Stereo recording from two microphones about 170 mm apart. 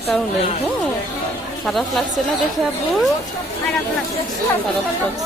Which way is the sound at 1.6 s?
Centre (ahead or behind).